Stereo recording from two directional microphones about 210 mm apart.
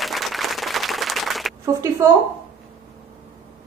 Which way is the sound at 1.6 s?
15° right (ahead or behind).